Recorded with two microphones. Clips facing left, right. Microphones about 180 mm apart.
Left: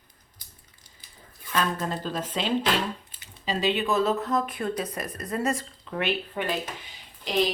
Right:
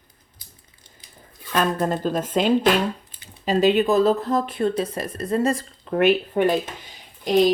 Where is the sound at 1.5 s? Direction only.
50° right (ahead or behind); by 5.9 s 30° right (ahead or behind).